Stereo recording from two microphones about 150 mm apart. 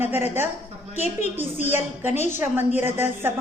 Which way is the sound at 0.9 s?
50° left (ahead or behind).